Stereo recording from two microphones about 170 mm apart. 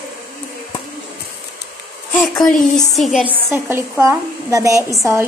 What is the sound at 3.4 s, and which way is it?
A woman's voice, 15° right (ahead or behind).